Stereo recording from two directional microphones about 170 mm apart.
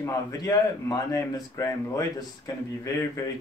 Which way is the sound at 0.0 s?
20° left (ahead or behind).